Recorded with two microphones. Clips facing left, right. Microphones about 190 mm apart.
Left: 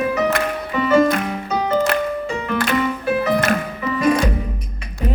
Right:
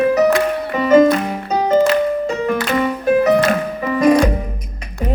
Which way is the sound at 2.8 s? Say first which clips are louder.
Right 5 dB; 45° right (ahead or behind).